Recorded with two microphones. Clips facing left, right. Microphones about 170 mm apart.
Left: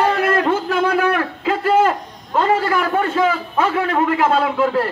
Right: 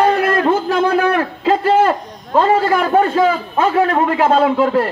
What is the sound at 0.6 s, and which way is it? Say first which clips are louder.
A man's voice: right 3 dB; 30° right (ahead or behind).